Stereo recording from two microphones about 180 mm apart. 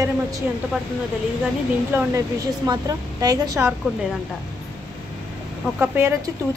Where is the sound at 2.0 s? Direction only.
15° right (ahead or behind).